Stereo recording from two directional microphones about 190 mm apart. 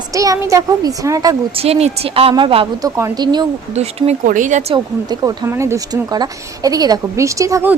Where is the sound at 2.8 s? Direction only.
15° right (ahead or behind).